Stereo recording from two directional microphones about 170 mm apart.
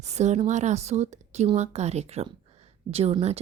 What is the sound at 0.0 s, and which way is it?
Speech, 40° right (ahead or behind).